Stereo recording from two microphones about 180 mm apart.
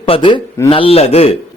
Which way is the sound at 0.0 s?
30° left (ahead or behind).